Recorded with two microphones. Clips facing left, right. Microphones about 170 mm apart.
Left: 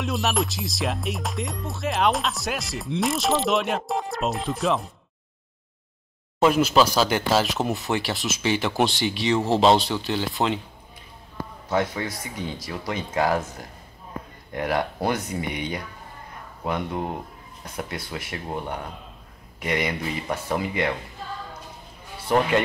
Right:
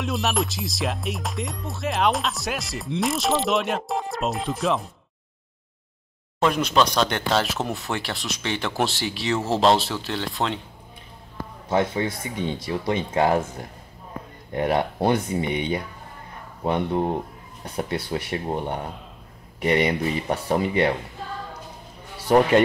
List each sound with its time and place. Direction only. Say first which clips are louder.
0.0 s music: even; centre (ahead or behind)
6.4 s music: left 2 dB; 5° left (ahead or behind)
11.7 s speech: right 3 dB; 25° right (ahead or behind)
14.5 s speech: right 3 dB; 25° right (ahead or behind)